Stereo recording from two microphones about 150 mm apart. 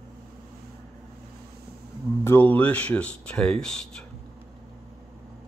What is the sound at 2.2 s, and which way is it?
Speech, 15° left (ahead or behind).